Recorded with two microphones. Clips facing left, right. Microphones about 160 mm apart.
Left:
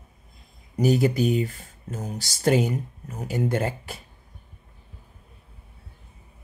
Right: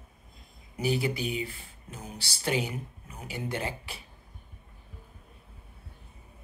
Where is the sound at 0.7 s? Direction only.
45° left (ahead or behind).